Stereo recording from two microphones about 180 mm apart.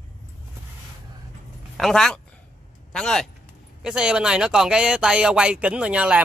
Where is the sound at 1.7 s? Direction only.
Centre (ahead or behind).